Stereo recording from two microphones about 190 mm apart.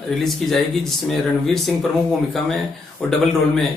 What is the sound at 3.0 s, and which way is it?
Speech, centre (ahead or behind).